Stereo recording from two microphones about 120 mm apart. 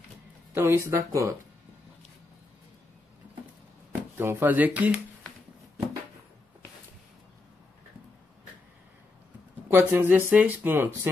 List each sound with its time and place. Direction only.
0.6 s speech: 20° right (ahead or behind)
4.2 s speech: 20° right (ahead or behind)
9.7 s speech: 15° right (ahead or behind)